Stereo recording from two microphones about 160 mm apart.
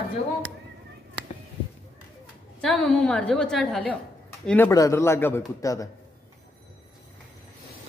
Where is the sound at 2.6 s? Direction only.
5° left (ahead or behind).